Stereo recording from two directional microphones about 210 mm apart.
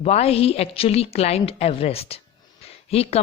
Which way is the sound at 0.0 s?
30° left (ahead or behind).